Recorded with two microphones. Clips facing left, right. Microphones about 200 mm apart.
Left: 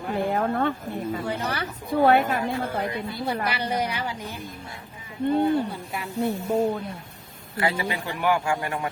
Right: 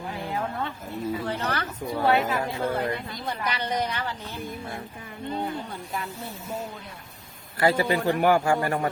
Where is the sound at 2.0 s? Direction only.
50° left (ahead or behind).